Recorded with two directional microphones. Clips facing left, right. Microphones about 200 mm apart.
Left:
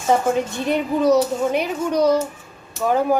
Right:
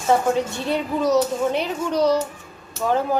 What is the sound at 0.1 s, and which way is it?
Speech, 15° left (ahead or behind).